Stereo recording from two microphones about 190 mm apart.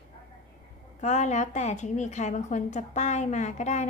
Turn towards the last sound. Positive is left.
turn(degrees=35)  # may be behind; listen again after turning